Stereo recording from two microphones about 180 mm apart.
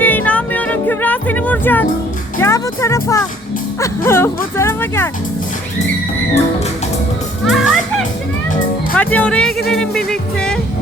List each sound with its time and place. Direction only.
0.0 s music: 10° left (ahead or behind)
2.4 s speech: 15° left (ahead or behind)
7.4 s music: centre (ahead or behind)
9.0 s speech: 10° left (ahead or behind)
9.6 s music: centre (ahead or behind)